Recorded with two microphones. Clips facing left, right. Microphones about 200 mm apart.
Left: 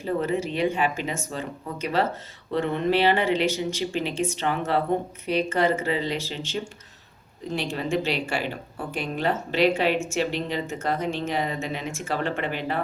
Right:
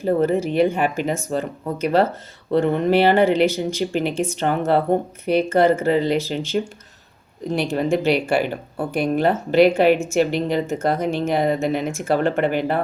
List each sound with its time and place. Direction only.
0.0 s a woman's voice: 50° right (ahead or behind)
2.5 s a woman's voice: 45° right (ahead or behind)
7.7 s a woman's voice: 55° right (ahead or behind)